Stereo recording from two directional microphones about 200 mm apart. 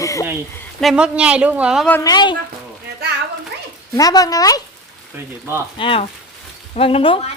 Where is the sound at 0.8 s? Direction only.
Centre (ahead or behind).